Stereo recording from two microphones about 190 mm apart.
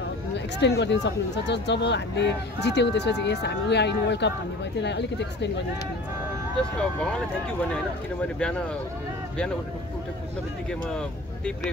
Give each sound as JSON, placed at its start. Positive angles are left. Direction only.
{"t": 0.6, "sound": "speech", "side_deg": 65}
{"t": 6.6, "sound": "speech", "side_deg": 5}
{"t": 8.4, "sound": "speech", "side_deg": 5}
{"t": 10.7, "sound": "speech", "side_deg": 5}